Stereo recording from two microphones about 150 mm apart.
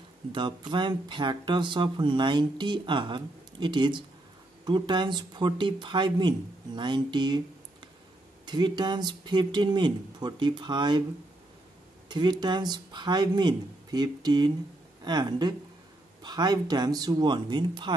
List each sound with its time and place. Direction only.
0.3 s speech: 30° right (ahead or behind)
8.5 s speech: 30° right (ahead or behind)
12.1 s speech: 30° right (ahead or behind)